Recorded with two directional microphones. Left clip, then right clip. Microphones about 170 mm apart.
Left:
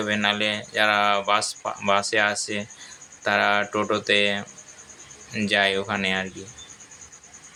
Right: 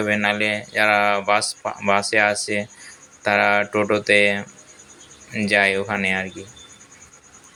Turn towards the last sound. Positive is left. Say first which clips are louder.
# right 3 dB
turn(degrees=-10)  # may be behind; listen again after turning